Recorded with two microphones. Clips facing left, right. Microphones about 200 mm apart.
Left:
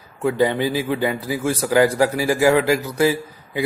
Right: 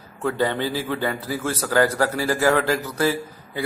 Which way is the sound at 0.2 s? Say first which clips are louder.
Left 4 dB; 10° left (ahead or behind).